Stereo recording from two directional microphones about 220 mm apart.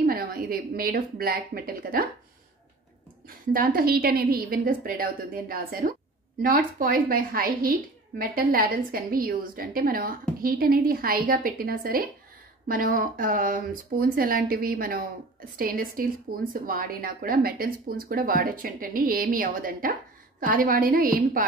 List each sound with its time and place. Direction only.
0.0 s speech: 45° right (ahead or behind)
3.3 s a woman's voice: 40° right (ahead or behind)